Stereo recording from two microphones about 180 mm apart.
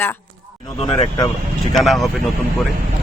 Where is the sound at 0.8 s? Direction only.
25° left (ahead or behind).